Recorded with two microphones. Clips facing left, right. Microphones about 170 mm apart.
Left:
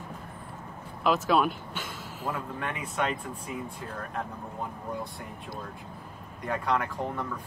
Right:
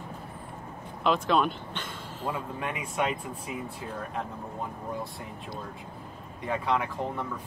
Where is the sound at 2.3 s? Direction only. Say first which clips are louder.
Right 1 dB; 10° right (ahead or behind).